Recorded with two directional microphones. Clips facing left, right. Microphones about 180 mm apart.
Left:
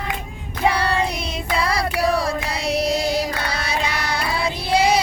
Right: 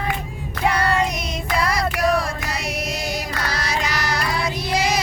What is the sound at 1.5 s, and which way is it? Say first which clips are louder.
Child singing: even; 30° left (ahead or behind).